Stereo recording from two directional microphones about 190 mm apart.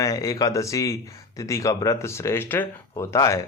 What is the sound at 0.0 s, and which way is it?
Speech, 20° left (ahead or behind).